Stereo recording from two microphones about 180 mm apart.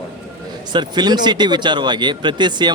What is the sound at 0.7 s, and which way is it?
Speech, 25° right (ahead or behind).